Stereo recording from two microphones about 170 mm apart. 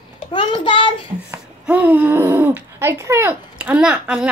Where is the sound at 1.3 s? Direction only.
10° right (ahead or behind).